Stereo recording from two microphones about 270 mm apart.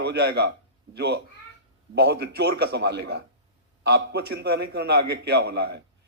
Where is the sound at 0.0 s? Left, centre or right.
Right.